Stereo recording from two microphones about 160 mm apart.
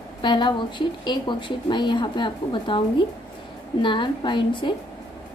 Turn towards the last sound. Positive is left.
turn(degrees=30)  # may be behind; listen again after turning